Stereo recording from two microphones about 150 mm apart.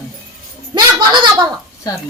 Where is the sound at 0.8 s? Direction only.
25° right (ahead or behind).